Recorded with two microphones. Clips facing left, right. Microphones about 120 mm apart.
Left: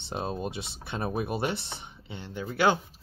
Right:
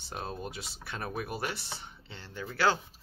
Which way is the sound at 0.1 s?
25° left (ahead or behind).